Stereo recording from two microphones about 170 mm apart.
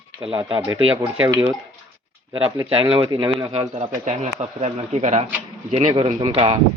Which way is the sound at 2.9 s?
25° right (ahead or behind).